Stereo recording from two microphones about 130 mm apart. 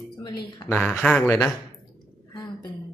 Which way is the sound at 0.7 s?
10° left (ahead or behind).